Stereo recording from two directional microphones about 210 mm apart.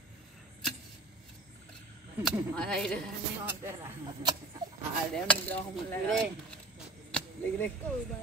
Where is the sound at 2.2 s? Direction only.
5° left (ahead or behind).